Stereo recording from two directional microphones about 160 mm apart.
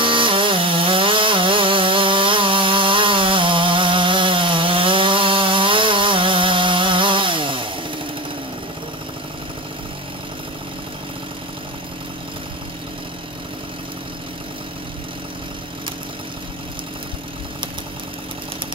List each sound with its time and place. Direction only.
0.0 s sawing: 30° right (ahead or behind)